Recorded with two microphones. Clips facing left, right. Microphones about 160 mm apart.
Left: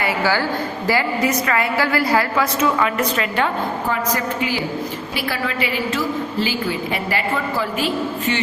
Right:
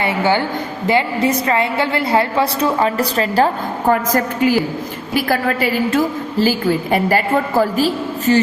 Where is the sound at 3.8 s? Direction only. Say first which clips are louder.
Right 10 dB; 50° right (ahead or behind).